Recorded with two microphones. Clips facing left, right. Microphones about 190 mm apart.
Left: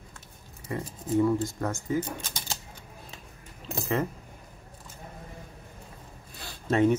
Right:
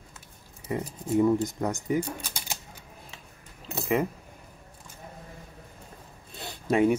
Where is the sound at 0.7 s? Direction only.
20° right (ahead or behind).